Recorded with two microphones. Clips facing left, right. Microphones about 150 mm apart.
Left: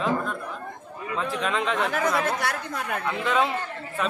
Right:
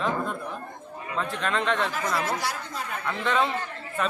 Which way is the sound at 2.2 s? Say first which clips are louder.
Left 2 dB; 60° left (ahead or behind).